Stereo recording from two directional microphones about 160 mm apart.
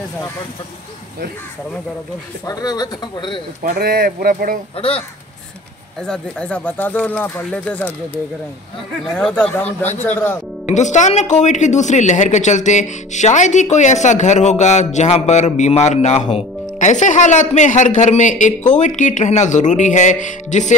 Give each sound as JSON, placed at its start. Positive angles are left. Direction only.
{"t": 2.4, "sound": "speech", "side_deg": 25}
{"t": 3.6, "sound": "speech", "side_deg": -65}
{"t": 4.7, "sound": "speech", "side_deg": 35}
{"t": 5.9, "sound": "speech", "side_deg": 5}
{"t": 9.1, "sound": "speech", "side_deg": 5}
{"t": 10.7, "sound": "speech", "side_deg": 50}